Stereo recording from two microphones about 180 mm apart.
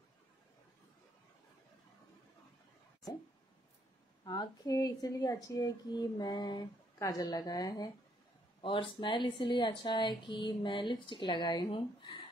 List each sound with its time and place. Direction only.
4.2 s a woman's voice: 25° left (ahead or behind)